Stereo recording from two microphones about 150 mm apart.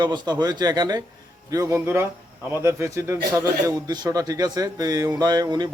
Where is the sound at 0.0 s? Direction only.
30° right (ahead or behind).